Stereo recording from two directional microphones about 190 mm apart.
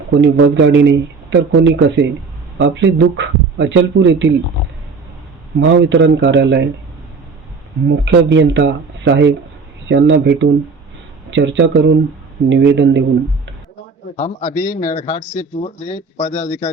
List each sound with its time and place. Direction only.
0.1 s speech: 70° right (ahead or behind)
5.5 s speech: 70° right (ahead or behind)
8.0 s speech: 75° right (ahead or behind)
14.2 s a man's voice: 40° left (ahead or behind)